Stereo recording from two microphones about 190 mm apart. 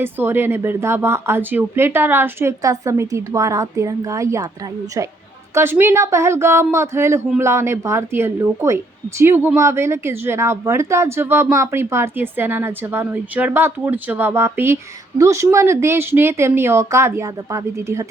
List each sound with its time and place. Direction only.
0.0 s a woman's voice: 10° right (ahead or behind)